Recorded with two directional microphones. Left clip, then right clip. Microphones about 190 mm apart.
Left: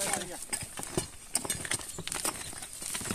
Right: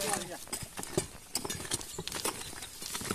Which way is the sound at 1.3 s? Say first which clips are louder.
Left 2 dB; 25° left (ahead or behind).